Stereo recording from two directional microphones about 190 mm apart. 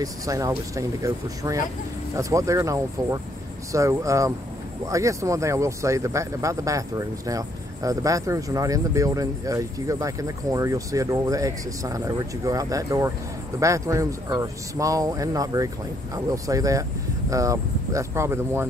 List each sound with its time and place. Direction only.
0.0 s speech: 20° right (ahead or behind)